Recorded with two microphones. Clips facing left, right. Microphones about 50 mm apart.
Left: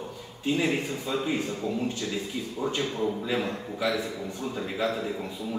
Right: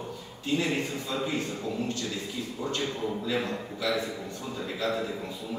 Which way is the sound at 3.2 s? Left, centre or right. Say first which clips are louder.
Left 1 dB; centre.